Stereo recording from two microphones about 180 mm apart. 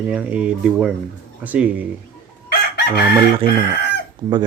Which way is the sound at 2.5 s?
65° left (ahead or behind).